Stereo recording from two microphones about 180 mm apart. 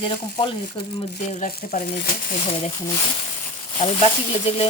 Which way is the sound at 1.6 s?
50° left (ahead or behind).